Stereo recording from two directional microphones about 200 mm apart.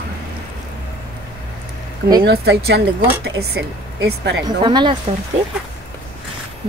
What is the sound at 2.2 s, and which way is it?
Speech, 55° right (ahead or behind).